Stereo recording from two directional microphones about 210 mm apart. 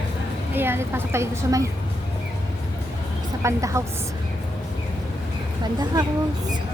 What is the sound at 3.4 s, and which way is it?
Speech, 15° right (ahead or behind).